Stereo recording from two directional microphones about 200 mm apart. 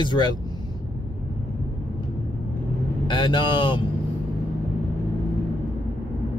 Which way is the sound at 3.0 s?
25° left (ahead or behind).